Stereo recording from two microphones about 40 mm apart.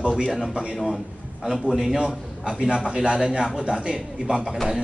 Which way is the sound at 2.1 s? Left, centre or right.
Centre.